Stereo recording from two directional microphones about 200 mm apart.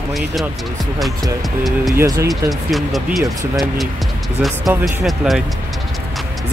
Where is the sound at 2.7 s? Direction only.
Centre (ahead or behind).